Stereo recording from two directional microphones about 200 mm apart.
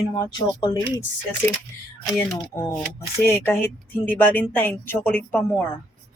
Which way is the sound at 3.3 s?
10° left (ahead or behind).